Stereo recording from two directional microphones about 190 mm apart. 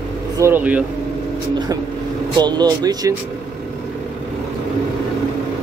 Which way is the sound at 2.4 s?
20° right (ahead or behind).